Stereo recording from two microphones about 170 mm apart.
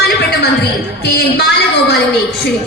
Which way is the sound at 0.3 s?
70° left (ahead or behind).